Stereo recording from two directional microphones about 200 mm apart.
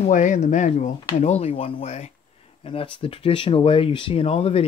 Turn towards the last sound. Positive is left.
turn(degrees=30)  # may be behind; listen again after turning